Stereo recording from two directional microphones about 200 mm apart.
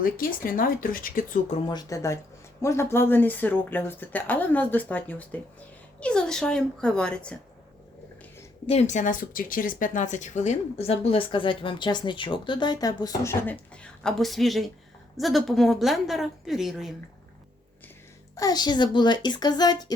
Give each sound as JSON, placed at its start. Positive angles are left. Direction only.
{"t": 0.0, "sound": "speech", "side_deg": 45}
{"t": 1.6, "sound": "speech", "side_deg": 20}
{"t": 8.6, "sound": "a woman's voice", "side_deg": 35}
{"t": 18.3, "sound": "speech", "side_deg": 20}